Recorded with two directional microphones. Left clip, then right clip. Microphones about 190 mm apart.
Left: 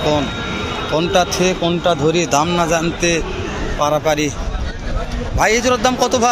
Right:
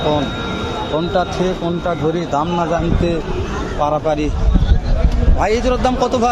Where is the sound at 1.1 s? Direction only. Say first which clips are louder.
Left 4 dB; 15° left (ahead or behind).